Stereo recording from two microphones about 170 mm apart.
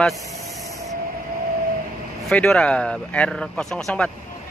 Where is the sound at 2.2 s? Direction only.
5° left (ahead or behind).